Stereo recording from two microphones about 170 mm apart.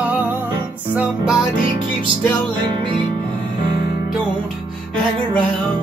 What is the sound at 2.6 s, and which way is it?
Music, 30° right (ahead or behind).